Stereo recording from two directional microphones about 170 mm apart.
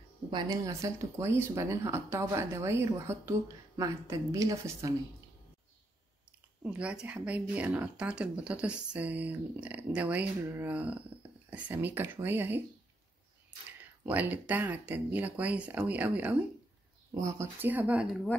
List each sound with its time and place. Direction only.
0.3 s speech: 25° right (ahead or behind)
6.6 s speech: 5° right (ahead or behind)
13.7 s speech: 10° right (ahead or behind)